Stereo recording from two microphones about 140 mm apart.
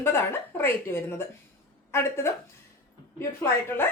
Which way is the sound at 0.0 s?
15° left (ahead or behind).